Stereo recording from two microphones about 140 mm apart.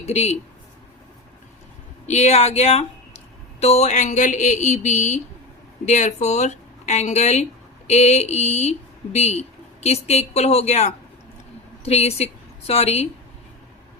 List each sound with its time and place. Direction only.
0.0 s speech: 50° left (ahead or behind)
2.0 s a woman's voice: 50° left (ahead or behind)